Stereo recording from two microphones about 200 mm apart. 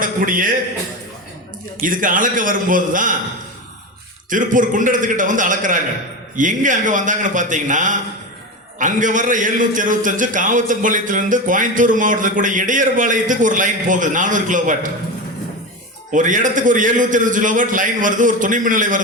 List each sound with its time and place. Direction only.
0.0 s a man's voice: 45° right (ahead or behind)
1.8 s a man's voice: 40° right (ahead or behind)
4.3 s a man's voice: 40° right (ahead or behind)
16.1 s a man's voice: 40° right (ahead or behind)